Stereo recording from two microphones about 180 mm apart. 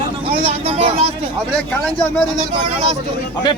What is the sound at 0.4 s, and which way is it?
Vehicle, 35° right (ahead or behind).